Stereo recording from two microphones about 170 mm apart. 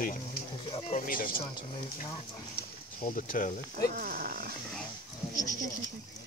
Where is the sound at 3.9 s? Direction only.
60° right (ahead or behind).